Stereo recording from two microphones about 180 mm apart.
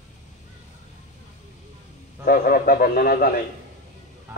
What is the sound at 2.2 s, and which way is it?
Speech, 55° left (ahead or behind).